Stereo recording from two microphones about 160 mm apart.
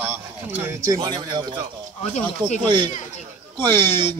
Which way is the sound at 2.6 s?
30° right (ahead or behind).